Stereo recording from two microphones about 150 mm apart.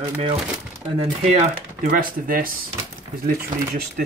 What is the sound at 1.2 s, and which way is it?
Speech, 55° right (ahead or behind).